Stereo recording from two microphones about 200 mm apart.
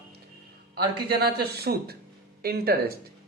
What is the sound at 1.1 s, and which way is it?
Speech, 55° right (ahead or behind).